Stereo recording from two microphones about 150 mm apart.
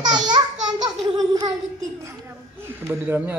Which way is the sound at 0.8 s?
25° right (ahead or behind).